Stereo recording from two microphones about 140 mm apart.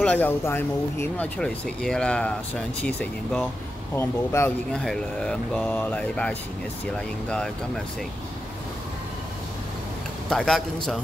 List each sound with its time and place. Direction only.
0.0 s speech: 10° left (ahead or behind)
4.7 s a man's voice: 5° left (ahead or behind)
10.3 s a man's voice: 5° left (ahead or behind)